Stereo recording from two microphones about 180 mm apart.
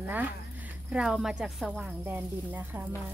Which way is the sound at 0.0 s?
10° right (ahead or behind).